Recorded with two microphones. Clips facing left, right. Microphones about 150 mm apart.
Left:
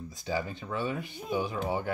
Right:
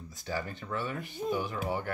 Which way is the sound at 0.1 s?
15° left (ahead or behind).